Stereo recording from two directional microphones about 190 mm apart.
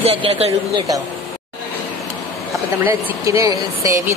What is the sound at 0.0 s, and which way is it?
Speech, 30° right (ahead or behind).